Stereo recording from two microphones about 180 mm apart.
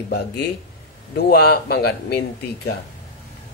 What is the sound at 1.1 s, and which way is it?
Speech, 60° left (ahead or behind).